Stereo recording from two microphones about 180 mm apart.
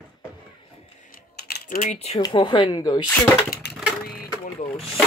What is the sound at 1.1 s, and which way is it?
Typing, 50° left (ahead or behind).